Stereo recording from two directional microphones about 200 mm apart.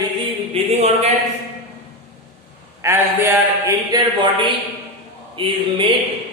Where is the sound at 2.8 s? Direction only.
10° right (ahead or behind).